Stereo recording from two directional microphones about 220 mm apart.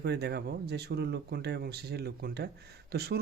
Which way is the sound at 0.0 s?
50° right (ahead or behind).